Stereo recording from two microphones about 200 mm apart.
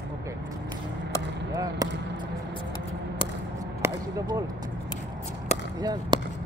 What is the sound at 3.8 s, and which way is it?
Speech, 20° right (ahead or behind).